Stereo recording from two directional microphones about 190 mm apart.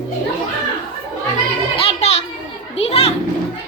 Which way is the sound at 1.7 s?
30° left (ahead or behind).